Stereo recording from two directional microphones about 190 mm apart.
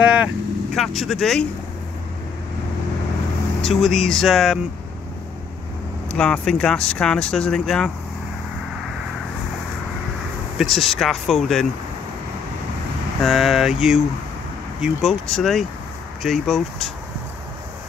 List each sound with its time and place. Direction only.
0.0 s vehicle: 5° right (ahead or behind)
0.7 s speech: centre (ahead or behind)
3.6 s speech: centre (ahead or behind)
6.1 s speech: 5° left (ahead or behind)
10.6 s speech: centre (ahead or behind)
13.2 s speech: centre (ahead or behind)